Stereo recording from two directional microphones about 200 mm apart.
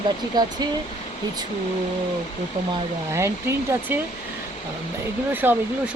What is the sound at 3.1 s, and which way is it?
Speech, 15° right (ahead or behind).